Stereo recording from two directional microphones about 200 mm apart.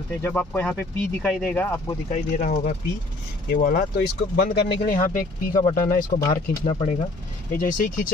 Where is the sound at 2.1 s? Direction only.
40° left (ahead or behind).